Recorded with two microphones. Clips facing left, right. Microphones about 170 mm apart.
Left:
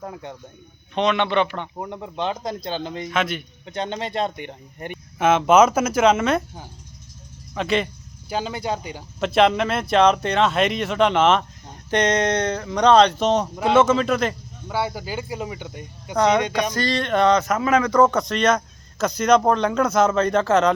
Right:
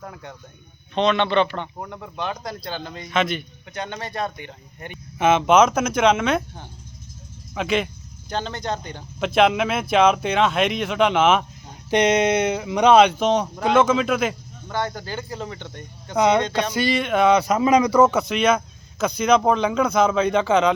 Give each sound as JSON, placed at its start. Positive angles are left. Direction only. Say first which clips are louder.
{"t": 0.0, "sound": "a man's voice", "louder": "left 4 dB", "side_deg": 20}
{"t": 3.1, "sound": "a man's voice", "louder": "right 3 dB", "side_deg": 5}
{"t": 3.7, "sound": "speech", "louder": "left 4 dB", "side_deg": 25}
{"t": 4.4, "sound": "speech", "louder": "left 4 dB", "side_deg": 50}
{"t": 5.1, "sound": "speech", "louder": "left 1 dB", "side_deg": 0}
{"t": 8.3, "sound": "speech", "louder": "left 1 dB", "side_deg": 10}
{"t": 14.7, "sound": "a man's voice", "louder": "left 1 dB", "side_deg": 10}
{"t": 16.1, "sound": "speech", "louder": "even", "side_deg": -10}